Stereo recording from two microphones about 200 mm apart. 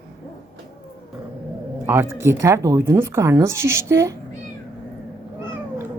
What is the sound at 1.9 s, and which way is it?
Speech, 15° right (ahead or behind).